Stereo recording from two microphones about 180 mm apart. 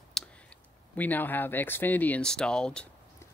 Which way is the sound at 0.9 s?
10° left (ahead or behind).